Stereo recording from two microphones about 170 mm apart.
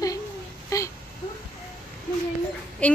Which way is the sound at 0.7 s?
20° left (ahead or behind).